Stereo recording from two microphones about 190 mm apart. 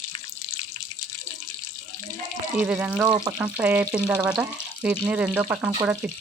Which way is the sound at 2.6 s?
5° right (ahead or behind).